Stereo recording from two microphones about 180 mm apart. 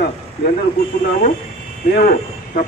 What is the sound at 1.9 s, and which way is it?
Speech, 55° left (ahead or behind).